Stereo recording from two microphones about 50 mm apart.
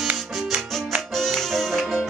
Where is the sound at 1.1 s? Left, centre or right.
Centre.